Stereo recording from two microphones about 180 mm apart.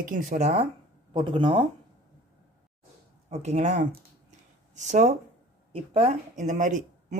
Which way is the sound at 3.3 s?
40° right (ahead or behind).